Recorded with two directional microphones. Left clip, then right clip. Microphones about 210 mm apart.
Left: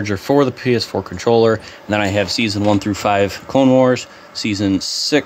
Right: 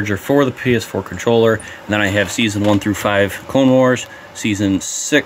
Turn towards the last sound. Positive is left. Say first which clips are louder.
# right 1 dB
turn(degrees=0)  # may be behind; listen again after turning